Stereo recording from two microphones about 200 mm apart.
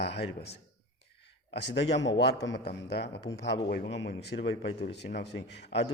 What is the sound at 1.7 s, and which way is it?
A man's voice, 60° left (ahead or behind).